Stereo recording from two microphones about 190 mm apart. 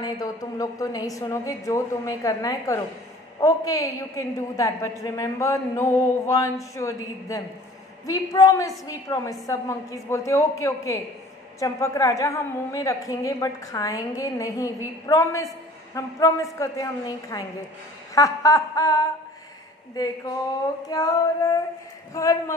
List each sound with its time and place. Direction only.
0.0 s a woman's voice: 20° left (ahead or behind)